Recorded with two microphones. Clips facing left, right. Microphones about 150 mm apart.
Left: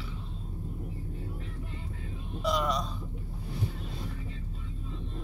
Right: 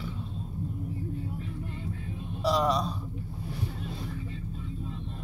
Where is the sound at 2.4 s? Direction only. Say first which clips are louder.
Right 4 dB; 35° right (ahead or behind).